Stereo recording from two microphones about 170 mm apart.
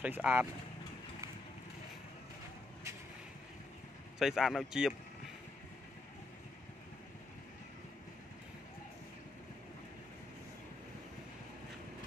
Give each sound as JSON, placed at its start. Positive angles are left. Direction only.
{"t": 0.0, "sound": "speech", "side_deg": -10}
{"t": 4.2, "sound": "speech", "side_deg": 0}